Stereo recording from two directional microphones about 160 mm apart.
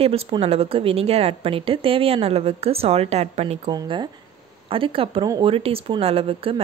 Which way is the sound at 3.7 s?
30° right (ahead or behind).